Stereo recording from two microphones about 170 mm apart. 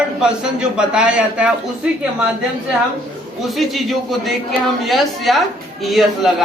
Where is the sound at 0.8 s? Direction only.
5° right (ahead or behind).